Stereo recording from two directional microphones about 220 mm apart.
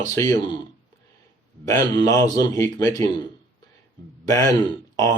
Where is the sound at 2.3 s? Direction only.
15° left (ahead or behind).